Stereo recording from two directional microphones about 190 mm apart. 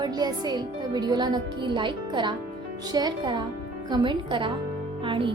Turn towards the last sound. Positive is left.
turn(degrees=-25)  # may be behind; listen again after turning